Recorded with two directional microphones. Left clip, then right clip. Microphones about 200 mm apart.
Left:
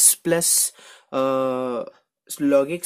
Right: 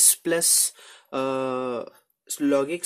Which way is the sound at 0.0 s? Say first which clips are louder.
Left 2 dB; 35° left (ahead or behind).